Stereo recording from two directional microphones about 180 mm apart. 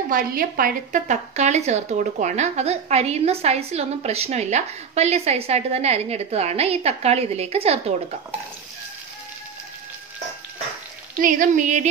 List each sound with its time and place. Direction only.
0.1 s speech: 55° right (ahead or behind); by 7.8 s 35° right (ahead or behind)
11.1 s speech: 45° right (ahead or behind)